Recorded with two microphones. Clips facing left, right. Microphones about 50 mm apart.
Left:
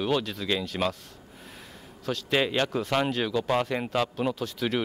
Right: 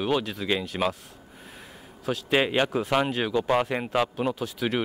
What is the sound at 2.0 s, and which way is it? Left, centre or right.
Speech, centre.